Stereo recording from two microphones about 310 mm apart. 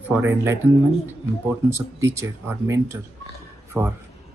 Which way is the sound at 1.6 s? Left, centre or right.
Centre.